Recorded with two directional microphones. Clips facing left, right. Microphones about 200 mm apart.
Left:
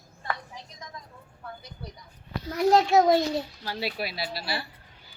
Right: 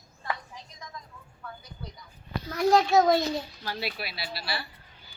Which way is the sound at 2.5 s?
20° left (ahead or behind).